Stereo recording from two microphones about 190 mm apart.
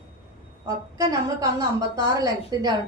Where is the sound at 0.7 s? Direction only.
20° right (ahead or behind).